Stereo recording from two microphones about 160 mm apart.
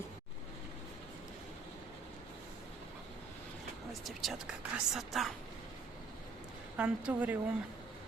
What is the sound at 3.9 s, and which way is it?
A woman's voice, centre (ahead or behind).